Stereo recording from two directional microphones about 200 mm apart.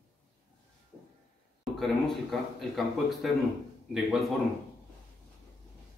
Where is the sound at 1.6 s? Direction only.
Centre (ahead or behind).